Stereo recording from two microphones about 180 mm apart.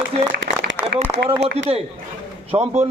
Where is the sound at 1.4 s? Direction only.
70° right (ahead or behind).